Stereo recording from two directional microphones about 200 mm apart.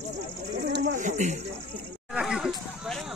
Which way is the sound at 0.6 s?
55° right (ahead or behind).